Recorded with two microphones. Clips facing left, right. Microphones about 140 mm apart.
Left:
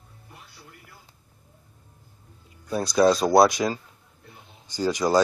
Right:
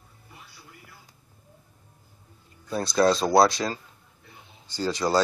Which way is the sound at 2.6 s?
10° left (ahead or behind).